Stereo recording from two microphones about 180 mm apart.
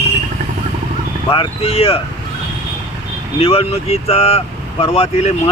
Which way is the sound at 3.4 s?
35° left (ahead or behind).